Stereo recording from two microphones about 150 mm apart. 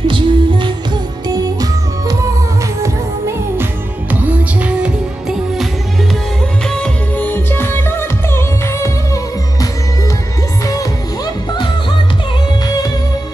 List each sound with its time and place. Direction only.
0.1 s music: 35° right (ahead or behind); by 4.9 s 10° right (ahead or behind)
6.7 s music: 10° left (ahead or behind)
12.6 s music: 25° left (ahead or behind)